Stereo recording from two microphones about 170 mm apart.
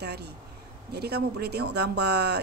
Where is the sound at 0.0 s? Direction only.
75° right (ahead or behind).